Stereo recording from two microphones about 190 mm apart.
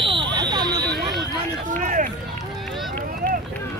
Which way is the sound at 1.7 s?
40° right (ahead or behind).